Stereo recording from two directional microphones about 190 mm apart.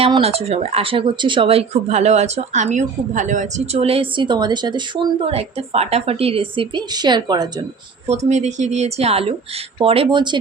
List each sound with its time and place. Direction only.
0.0 s speech: 30° right (ahead or behind)
8.0 s speech: 35° right (ahead or behind)